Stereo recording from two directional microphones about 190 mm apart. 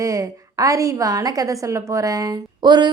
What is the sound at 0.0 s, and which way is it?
A woman's voice, 15° right (ahead or behind).